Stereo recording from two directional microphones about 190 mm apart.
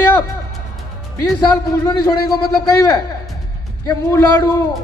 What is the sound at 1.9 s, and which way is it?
A man's voice, 20° left (ahead or behind).